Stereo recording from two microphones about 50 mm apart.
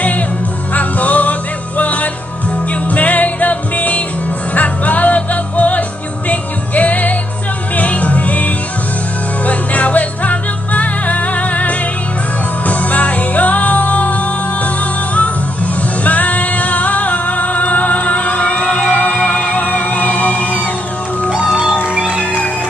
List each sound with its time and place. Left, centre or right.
0.7 s music: left
18.6 s music: centre
21.9 s music: centre